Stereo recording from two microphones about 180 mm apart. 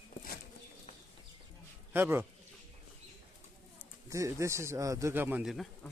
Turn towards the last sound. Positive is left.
turn(degrees=0)  # may be behind; listen again after turning